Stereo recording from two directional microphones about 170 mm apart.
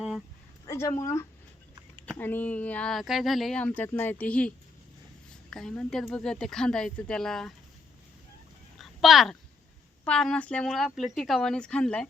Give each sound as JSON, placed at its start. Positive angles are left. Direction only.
{"t": 0.6, "sound": "a woman's voice", "side_deg": 20}
{"t": 8.8, "sound": "a sound", "side_deg": 0}
{"t": 10.0, "sound": "speech", "side_deg": 5}